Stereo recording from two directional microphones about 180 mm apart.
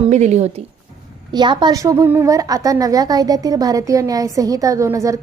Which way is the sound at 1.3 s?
25° right (ahead or behind).